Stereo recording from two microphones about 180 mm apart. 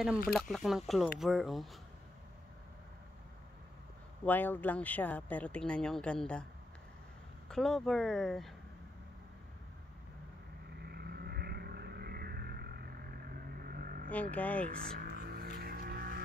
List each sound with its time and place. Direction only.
0.3 s speech: centre (ahead or behind)
4.2 s speech: 10° left (ahead or behind)
7.4 s speech: centre (ahead or behind)
10.9 s vehicle: 60° right (ahead or behind)
14.1 s speech: 10° left (ahead or behind)
15.0 s music: 55° right (ahead or behind)